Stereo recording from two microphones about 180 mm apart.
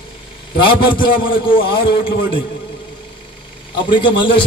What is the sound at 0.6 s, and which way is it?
A man's voice, 25° left (ahead or behind).